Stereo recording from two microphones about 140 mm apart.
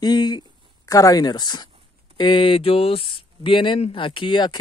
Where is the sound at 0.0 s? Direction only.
30° left (ahead or behind).